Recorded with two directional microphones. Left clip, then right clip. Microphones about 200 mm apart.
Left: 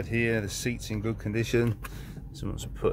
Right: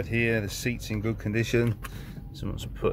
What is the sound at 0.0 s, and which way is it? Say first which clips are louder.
Speech: right 1 dB; 5° right (ahead or behind).